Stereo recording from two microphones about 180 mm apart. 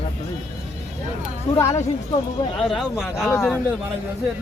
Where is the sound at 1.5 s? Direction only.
40° left (ahead or behind).